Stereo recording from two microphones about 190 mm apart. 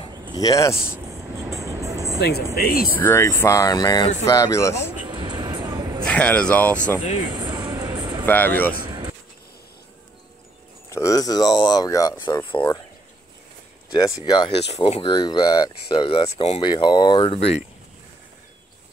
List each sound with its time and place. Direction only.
0.4 s speech: 15° left (ahead or behind)
1.1 s vehicle: 15° right (ahead or behind)
2.1 s speech: 55° left (ahead or behind)
3.0 s speech: 15° left (ahead or behind)
5.0 s a sound: 25° right (ahead or behind)
6.0 s speech: 5° left (ahead or behind)
7.2 s music: 25° right (ahead or behind)
8.3 s speech: 10° left (ahead or behind)
8.7 s vehicle: 25° right (ahead or behind)
10.9 s speech: 15° left (ahead or behind)
13.9 s speech: 20° left (ahead or behind)